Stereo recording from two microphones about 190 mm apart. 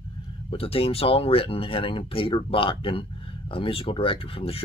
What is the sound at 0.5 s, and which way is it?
Speech, 30° left (ahead or behind).